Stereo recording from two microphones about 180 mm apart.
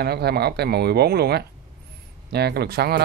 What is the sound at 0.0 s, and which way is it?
Speech, 60° right (ahead or behind).